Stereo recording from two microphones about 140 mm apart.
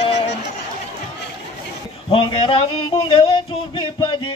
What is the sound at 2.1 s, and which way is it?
Speech, 40° left (ahead or behind).